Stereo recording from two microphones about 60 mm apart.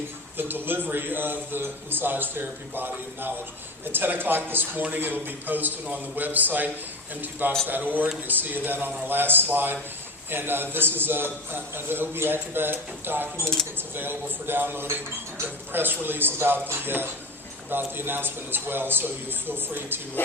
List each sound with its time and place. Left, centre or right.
0.3 s a man's voice: right